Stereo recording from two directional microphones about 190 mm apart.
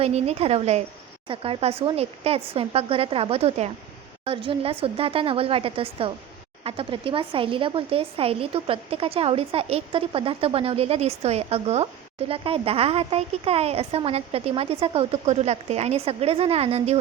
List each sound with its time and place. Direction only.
0.0 s a woman's voice: 35° right (ahead or behind)